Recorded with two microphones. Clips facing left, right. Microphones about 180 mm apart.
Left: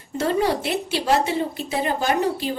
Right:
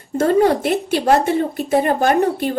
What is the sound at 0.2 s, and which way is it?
A woman's voice, 50° right (ahead or behind).